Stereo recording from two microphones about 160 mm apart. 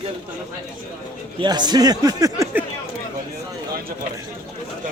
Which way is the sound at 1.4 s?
25° right (ahead or behind).